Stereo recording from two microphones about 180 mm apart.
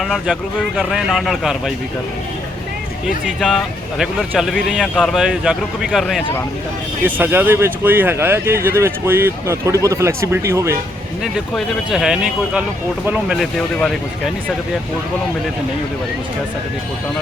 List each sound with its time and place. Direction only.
0.0 s speech: centre (ahead or behind)
3.4 s speech: centre (ahead or behind)
7.0 s speech: 10° right (ahead or behind)
11.2 s speech: centre (ahead or behind)